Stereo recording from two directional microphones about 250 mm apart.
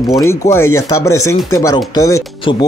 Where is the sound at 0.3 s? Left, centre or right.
Centre.